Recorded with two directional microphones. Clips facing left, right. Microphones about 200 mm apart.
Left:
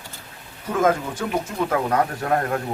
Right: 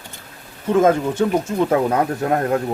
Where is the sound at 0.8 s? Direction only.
25° right (ahead or behind).